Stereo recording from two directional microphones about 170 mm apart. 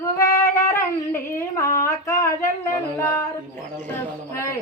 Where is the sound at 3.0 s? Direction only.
20° left (ahead or behind).